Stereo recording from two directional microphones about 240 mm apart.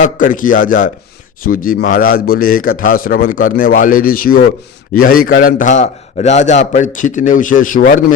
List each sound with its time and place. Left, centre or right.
0.0 s a man's voice: left